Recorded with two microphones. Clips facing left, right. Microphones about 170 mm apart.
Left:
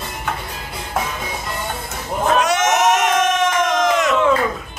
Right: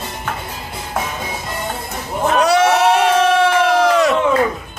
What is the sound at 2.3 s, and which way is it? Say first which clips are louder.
Crowd: right 6 dB; 35° right (ahead or behind).